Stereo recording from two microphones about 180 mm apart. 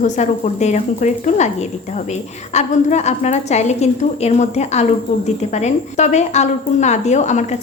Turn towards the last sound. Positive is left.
turn(degrees=40)  # may be behind; listen again after turning